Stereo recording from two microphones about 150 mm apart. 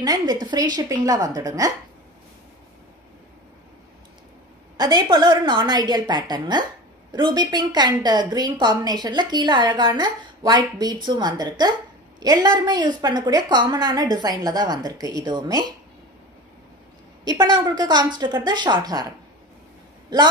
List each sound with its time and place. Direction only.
0.0 s a woman's voice: 25° right (ahead or behind)
4.7 s a woman's voice: 30° right (ahead or behind)
17.2 s a woman's voice: 30° right (ahead or behind)